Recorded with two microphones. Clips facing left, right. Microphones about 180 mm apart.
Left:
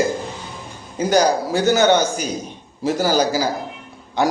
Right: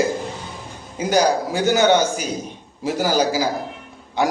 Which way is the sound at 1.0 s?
10° right (ahead or behind).